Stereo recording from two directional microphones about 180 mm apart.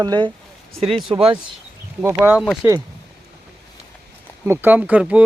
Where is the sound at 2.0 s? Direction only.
10° right (ahead or behind).